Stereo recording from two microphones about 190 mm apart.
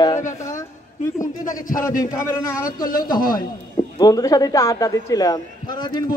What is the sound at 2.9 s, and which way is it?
Speech, 50° left (ahead or behind).